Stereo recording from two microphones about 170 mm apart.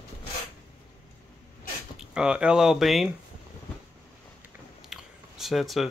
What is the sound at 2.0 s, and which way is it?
Speech, 5° right (ahead or behind).